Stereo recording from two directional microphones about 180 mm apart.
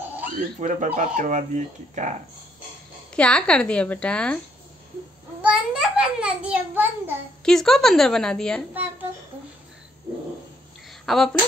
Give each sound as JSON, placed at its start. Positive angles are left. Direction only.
{"t": 0.4, "sound": "speech", "side_deg": -45}
{"t": 3.2, "sound": "a woman's voice", "side_deg": 5}
{"t": 5.4, "sound": "a child's voice", "side_deg": -5}
{"t": 7.4, "sound": "a woman's voice", "side_deg": 0}
{"t": 10.9, "sound": "a sound", "side_deg": 0}